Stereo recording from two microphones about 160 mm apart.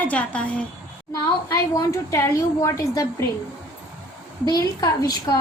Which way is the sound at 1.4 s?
15° left (ahead or behind).